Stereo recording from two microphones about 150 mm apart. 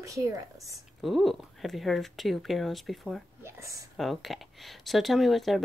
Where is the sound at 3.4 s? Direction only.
20° right (ahead or behind).